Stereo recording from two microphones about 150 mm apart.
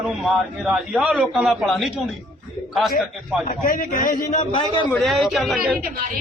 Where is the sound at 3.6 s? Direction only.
70° left (ahead or behind).